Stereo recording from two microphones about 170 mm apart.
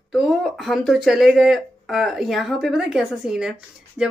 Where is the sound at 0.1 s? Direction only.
Centre (ahead or behind).